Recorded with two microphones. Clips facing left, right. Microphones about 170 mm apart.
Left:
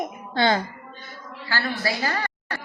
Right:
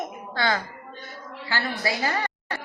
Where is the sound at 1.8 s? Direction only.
20° right (ahead or behind).